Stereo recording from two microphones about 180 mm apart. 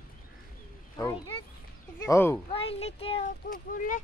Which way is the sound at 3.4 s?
50° left (ahead or behind).